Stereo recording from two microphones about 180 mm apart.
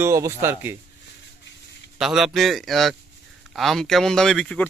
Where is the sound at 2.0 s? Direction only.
Centre (ahead or behind).